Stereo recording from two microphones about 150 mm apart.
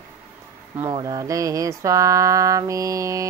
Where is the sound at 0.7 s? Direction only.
30° right (ahead or behind).